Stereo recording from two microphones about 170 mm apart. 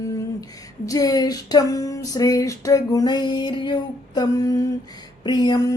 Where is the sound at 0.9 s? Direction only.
20° left (ahead or behind).